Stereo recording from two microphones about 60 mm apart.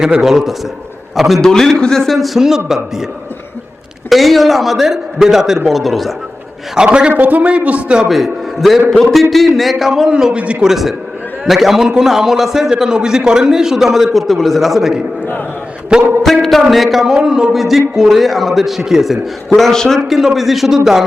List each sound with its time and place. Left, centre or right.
0.0 s a man's voice: centre
4.1 s a man's voice: centre
6.7 s a man's voice: centre
7.1 s a man's voice: right
8.0 s a man's voice: centre
10.7 s a man's voice: centre
16.2 s a man's voice: centre
19.5 s speech: centre
20.1 s a man's voice: centre